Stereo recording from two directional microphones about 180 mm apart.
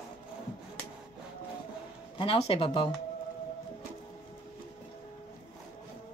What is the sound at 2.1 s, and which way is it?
Speech, 30° left (ahead or behind).